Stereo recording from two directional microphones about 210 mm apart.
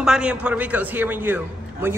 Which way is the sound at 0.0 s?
5° right (ahead or behind).